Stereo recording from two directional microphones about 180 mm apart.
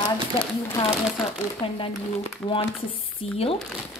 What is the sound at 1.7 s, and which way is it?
A woman's voice, 30° left (ahead or behind).